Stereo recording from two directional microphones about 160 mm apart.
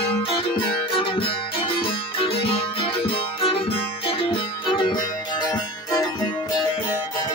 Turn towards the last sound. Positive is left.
turn(degrees=25)  # may be behind; listen again after turning